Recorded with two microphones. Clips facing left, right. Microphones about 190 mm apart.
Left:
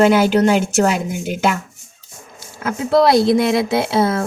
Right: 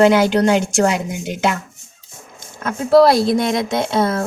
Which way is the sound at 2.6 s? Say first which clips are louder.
Right 3 dB; centre (ahead or behind).